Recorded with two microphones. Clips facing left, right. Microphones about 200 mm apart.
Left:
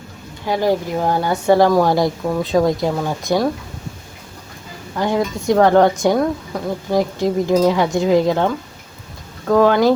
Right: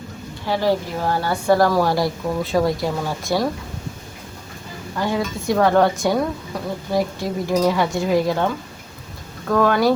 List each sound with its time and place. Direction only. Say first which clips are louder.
0.4 s speech: left 2 dB; 15° left (ahead or behind)
4.9 s speech: left 4 dB; 20° left (ahead or behind)
9.5 s speech: left 4 dB; 20° left (ahead or behind)